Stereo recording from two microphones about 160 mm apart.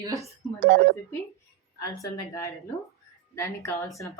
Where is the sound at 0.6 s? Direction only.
70° right (ahead or behind).